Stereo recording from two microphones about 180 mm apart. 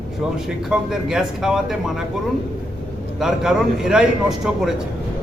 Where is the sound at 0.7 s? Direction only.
5° right (ahead or behind).